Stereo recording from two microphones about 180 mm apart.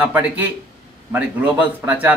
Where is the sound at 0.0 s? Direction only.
10° right (ahead or behind).